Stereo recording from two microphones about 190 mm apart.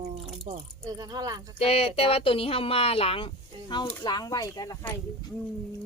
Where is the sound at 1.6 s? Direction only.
30° left (ahead or behind).